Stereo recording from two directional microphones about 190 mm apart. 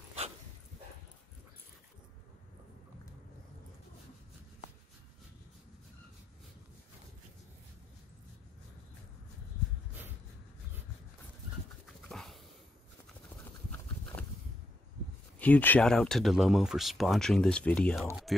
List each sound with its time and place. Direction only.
12.1 s dog: centre (ahead or behind)
15.3 s speech: 10° left (ahead or behind)